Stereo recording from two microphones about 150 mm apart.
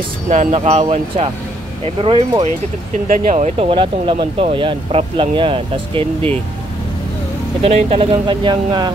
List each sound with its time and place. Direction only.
0.3 s speech: 50° right (ahead or behind)
3.1 s speech: 50° right (ahead or behind)
7.6 s speech: 40° right (ahead or behind)